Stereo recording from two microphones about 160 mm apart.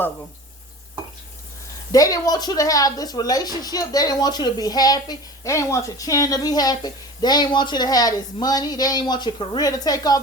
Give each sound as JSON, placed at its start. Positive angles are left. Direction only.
{"t": 1.9, "sound": "speech", "side_deg": 20}